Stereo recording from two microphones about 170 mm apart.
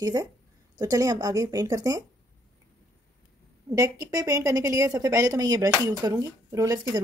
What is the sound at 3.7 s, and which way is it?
Speech, 20° right (ahead or behind).